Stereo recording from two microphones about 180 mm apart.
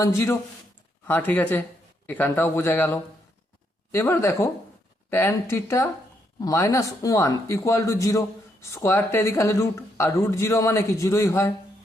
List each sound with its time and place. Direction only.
0.0 s a man's voice: 15° left (ahead or behind)